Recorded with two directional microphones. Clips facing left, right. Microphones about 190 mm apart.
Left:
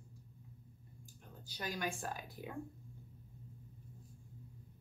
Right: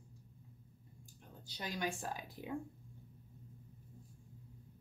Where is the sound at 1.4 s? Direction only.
20° right (ahead or behind).